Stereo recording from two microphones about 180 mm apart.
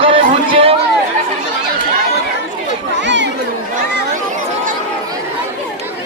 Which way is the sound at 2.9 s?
80° right.